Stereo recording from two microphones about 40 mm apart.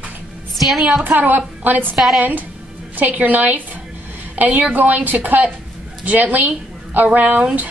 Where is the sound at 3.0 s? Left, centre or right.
Right.